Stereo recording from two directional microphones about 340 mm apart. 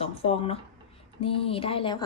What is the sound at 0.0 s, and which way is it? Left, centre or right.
Speech, centre.